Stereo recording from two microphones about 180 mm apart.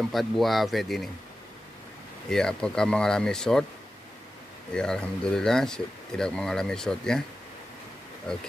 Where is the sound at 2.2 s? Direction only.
5° left (ahead or behind).